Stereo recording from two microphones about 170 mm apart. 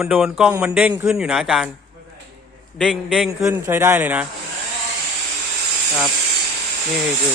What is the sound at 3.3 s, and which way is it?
Speech, 15° right (ahead or behind).